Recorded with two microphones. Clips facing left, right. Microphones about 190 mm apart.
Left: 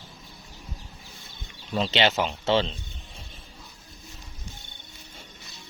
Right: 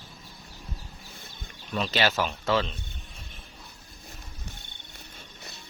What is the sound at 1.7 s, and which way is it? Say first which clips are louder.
A man's voice: left 3 dB; 25° left (ahead or behind).